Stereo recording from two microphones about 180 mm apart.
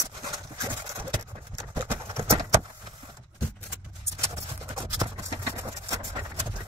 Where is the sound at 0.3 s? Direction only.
20° right (ahead or behind).